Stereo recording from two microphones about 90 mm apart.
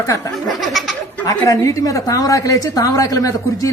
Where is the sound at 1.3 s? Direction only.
35° left (ahead or behind).